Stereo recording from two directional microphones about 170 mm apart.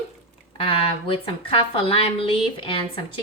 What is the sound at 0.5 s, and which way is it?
A woman's voice, 30° left (ahead or behind).